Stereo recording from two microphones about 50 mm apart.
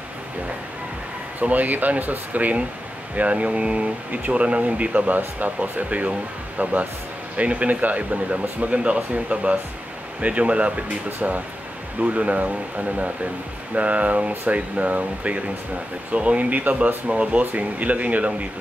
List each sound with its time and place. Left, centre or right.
1.4 s speech: right